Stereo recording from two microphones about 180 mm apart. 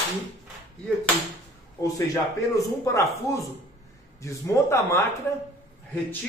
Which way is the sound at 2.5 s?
15° left (ahead or behind).